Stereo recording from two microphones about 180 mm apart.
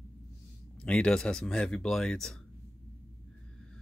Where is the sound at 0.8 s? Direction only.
5° left (ahead or behind).